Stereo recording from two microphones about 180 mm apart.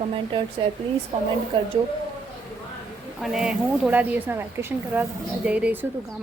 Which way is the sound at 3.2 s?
5° right (ahead or behind).